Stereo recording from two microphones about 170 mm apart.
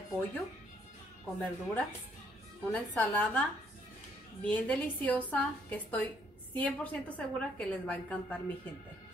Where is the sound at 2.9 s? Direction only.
10° left (ahead or behind).